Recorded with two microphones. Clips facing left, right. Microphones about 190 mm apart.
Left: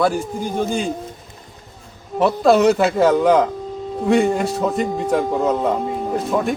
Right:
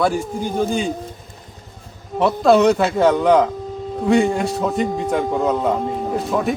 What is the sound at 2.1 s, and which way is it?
A man's voice, centre (ahead or behind).